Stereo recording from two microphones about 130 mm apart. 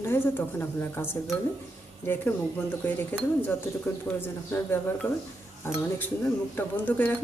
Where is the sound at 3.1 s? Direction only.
15° left (ahead or behind).